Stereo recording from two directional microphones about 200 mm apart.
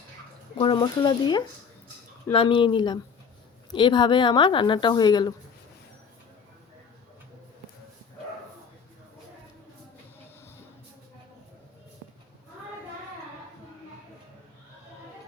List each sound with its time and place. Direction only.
0.5 s a woman's voice: 25° left (ahead or behind)